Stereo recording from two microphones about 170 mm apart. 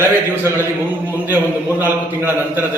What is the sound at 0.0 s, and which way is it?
Speech, 15° right (ahead or behind).